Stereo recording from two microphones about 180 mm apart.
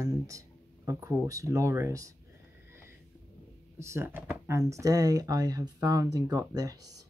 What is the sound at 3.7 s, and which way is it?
Speech, 15° right (ahead or behind).